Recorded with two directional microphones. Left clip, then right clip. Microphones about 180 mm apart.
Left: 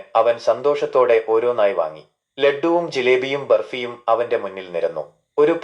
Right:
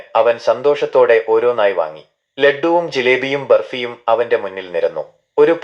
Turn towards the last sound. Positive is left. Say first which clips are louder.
# right 4 dB
turn(degrees=-15)  # may be behind; listen again after turning